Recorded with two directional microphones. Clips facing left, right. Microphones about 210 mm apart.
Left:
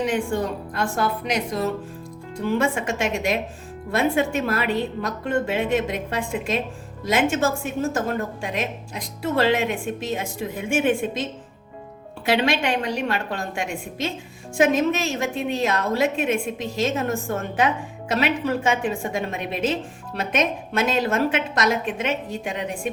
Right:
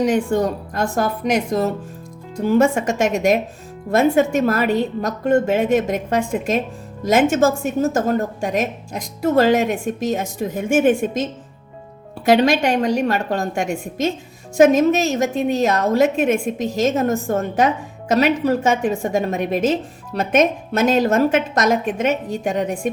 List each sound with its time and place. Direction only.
0.0 s a woman's voice: 45° right (ahead or behind)